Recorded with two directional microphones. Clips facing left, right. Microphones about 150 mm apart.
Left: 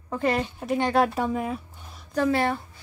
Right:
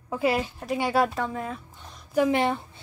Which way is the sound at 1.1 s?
15° left (ahead or behind).